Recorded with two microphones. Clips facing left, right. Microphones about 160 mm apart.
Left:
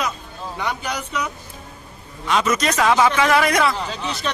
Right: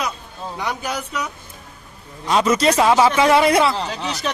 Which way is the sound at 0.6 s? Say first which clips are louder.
Right 1 dB; centre (ahead or behind).